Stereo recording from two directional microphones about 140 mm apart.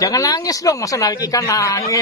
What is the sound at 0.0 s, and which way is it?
Speech, 25° left (ahead or behind).